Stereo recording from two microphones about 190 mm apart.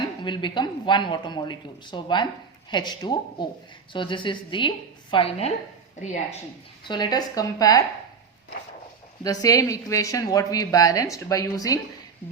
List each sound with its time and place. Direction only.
0.2 s a woman's voice: 25° left (ahead or behind)
6.8 s a woman's voice: 20° left (ahead or behind)
9.2 s a woman's voice: 20° left (ahead or behind)